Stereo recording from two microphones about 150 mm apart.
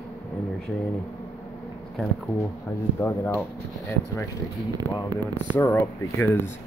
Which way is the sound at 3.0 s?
15° left (ahead or behind).